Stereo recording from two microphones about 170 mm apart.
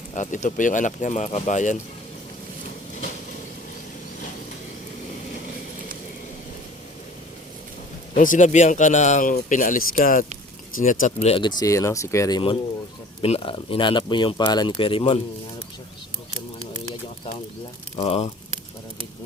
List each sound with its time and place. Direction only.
0.1 s speech: 45° left (ahead or behind)
8.1 s speech: 50° left (ahead or behind); by 12.4 s 20° left (ahead or behind)
13.2 s speech: 35° left (ahead or behind)
17.9 s speech: 35° left (ahead or behind)